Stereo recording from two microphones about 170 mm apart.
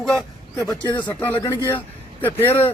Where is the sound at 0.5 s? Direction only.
20° left (ahead or behind).